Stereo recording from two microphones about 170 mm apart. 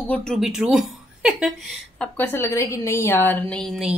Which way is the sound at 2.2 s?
15° left (ahead or behind).